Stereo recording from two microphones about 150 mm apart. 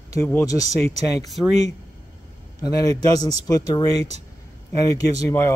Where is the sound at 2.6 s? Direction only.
25° left (ahead or behind).